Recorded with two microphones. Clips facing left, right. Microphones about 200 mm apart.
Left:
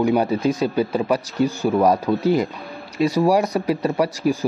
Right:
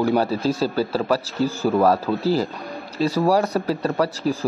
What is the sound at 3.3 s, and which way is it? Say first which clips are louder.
Speech: left 1 dB; 15° left (ahead or behind).